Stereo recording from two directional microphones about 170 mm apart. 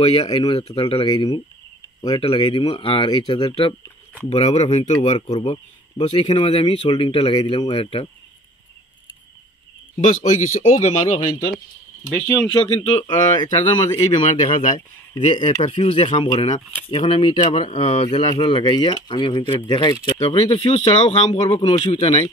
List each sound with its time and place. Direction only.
0.0 s speech: 35° left (ahead or behind)
9.9 s speech: 40° left (ahead or behind)
12.4 s speech: 35° left (ahead or behind)
14.5 s speech: 45° left (ahead or behind)
15.5 s speech: 30° left (ahead or behind)
18.0 s speech: 25° left (ahead or behind)
21.3 s speech: 25° left (ahead or behind)
21.9 s speech: 40° left (ahead or behind)